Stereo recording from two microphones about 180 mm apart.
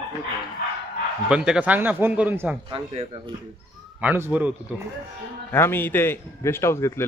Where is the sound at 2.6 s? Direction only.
30° right (ahead or behind).